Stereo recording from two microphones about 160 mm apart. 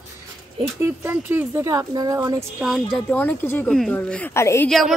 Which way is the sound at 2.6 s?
Centre (ahead or behind).